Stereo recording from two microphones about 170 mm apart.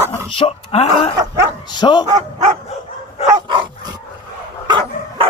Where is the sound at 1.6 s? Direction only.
25° left (ahead or behind).